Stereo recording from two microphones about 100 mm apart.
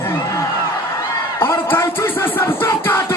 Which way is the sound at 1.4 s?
25° left (ahead or behind).